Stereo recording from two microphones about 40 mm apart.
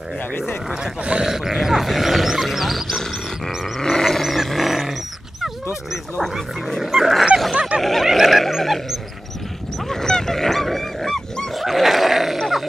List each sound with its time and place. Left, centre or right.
1.2 s roaring cats: centre
3.8 s roar: centre
6.8 s dog: centre
7.5 s a sound: right
7.8 s dog: centre
9.8 s dog: centre